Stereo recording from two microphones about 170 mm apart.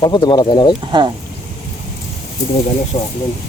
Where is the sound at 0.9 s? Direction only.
25° right (ahead or behind).